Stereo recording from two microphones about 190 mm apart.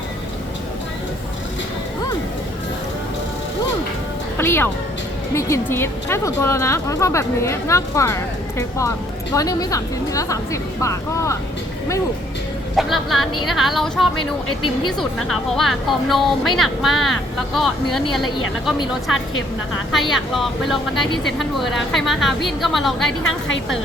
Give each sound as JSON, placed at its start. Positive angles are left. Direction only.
{"t": 4.4, "sound": "a woman's voice", "side_deg": 10}
{"t": 12.7, "sound": "speech", "side_deg": 0}
{"t": 19.9, "sound": "speech", "side_deg": 0}